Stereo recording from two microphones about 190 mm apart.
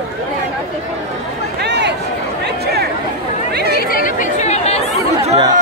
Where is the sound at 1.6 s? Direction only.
65° right (ahead or behind).